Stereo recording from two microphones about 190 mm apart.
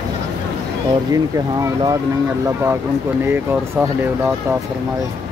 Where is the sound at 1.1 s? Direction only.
20° right (ahead or behind).